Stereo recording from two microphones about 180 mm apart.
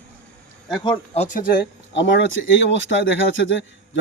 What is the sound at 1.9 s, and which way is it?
Speech, 90° left.